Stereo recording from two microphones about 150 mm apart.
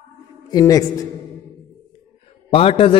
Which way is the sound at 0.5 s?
25° left (ahead or behind).